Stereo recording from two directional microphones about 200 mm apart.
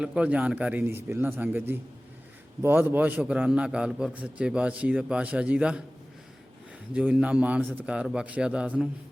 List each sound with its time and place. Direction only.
0.0 s a man's voice: 5° right (ahead or behind)
6.9 s a man's voice: 5° right (ahead or behind)